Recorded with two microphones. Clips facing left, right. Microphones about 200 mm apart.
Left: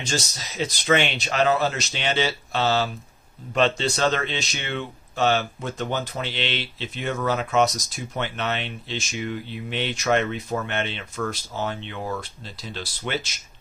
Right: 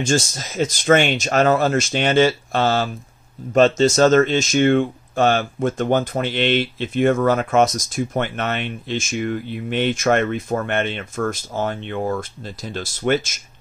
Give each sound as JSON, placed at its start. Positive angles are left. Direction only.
{"t": 0.0, "sound": "speech", "side_deg": -50}